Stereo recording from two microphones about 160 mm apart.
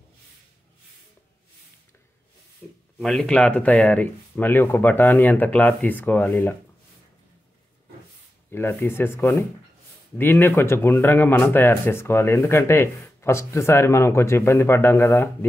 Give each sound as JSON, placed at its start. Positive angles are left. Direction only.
{"t": 3.0, "sound": "speech", "side_deg": 5}
{"t": 8.5, "sound": "speech", "side_deg": 15}